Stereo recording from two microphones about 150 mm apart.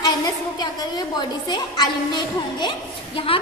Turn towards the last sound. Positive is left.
turn(degrees=35)  # may be behind; listen again after turning